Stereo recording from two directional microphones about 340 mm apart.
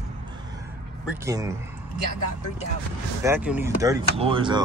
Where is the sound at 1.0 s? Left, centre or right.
Centre.